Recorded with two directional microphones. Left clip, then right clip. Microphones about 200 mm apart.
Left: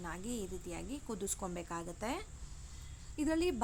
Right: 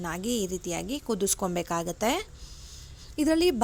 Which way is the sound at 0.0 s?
35° right (ahead or behind).